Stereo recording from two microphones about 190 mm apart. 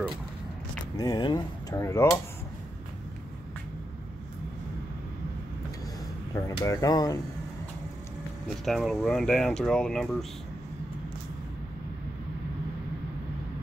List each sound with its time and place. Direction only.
0.9 s speech: 20° left (ahead or behind)
6.3 s speech: 15° left (ahead or behind)
8.6 s speech: centre (ahead or behind)